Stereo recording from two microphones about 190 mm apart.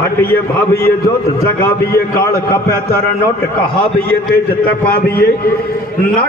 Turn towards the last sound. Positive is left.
turn(degrees=50)  # may be behind; listen again after turning